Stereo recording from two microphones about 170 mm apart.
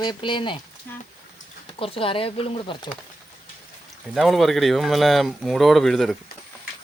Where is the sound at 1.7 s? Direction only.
30° left (ahead or behind).